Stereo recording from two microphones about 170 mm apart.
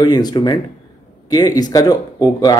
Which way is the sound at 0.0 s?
25° left (ahead or behind).